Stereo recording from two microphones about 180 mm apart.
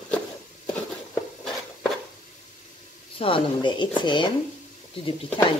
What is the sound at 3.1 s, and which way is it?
Speech, 30° left (ahead or behind).